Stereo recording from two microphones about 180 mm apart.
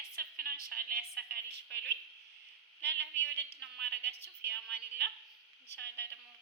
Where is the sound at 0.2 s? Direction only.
60° right (ahead or behind).